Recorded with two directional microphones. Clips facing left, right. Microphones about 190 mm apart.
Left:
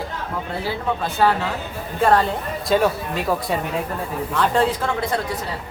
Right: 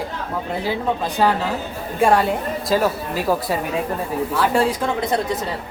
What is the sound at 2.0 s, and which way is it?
Speech, 10° right (ahead or behind).